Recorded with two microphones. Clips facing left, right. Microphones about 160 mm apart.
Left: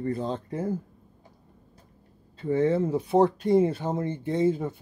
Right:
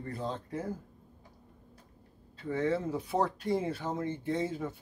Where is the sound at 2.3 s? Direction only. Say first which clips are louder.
Left 7 dB; 25° left (ahead or behind).